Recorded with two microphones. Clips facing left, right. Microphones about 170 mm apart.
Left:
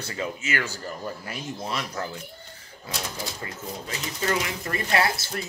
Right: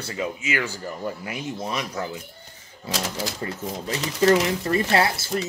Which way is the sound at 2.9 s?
90° right.